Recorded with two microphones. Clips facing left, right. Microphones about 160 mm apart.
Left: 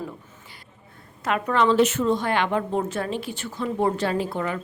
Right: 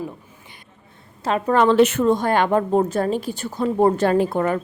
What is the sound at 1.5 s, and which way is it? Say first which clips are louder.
A woman's voice: right 4 dB; 60° right (ahead or behind).